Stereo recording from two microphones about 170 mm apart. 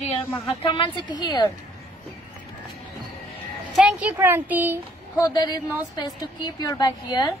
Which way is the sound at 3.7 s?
5° right (ahead or behind).